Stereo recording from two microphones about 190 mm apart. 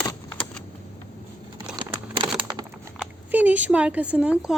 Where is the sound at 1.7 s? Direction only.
25° right (ahead or behind).